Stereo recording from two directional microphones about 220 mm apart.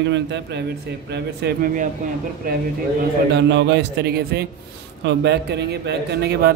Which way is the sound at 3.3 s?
50° right (ahead or behind).